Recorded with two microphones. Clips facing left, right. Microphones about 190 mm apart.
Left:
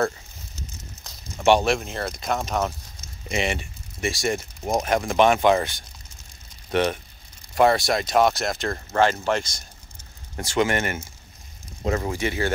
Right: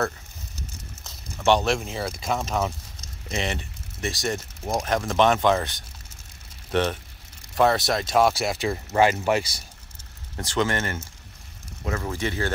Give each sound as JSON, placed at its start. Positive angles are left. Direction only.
{"t": 1.4, "sound": "speech", "side_deg": 10}
{"t": 1.8, "sound": "speech", "side_deg": 0}
{"t": 3.3, "sound": "speech", "side_deg": 10}
{"t": 6.7, "sound": "speech", "side_deg": 10}
{"t": 10.3, "sound": "speech", "side_deg": 10}
{"t": 11.8, "sound": "speech", "side_deg": 25}
{"t": 12.1, "sound": "speech", "side_deg": 10}